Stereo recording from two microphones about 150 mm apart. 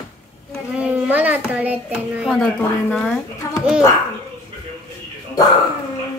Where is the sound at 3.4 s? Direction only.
25° left (ahead or behind).